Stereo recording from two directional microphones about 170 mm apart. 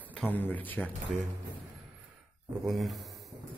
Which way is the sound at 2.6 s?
Centre (ahead or behind).